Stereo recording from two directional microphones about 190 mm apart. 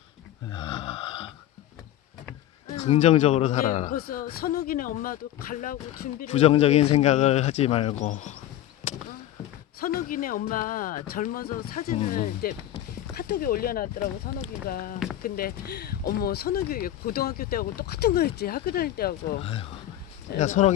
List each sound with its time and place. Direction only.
0.5 s a sound: 30° left (ahead or behind)
2.7 s speech: 35° left (ahead or behind)
9.8 s speech: 50° left (ahead or behind)
19.4 s speech: 30° left (ahead or behind)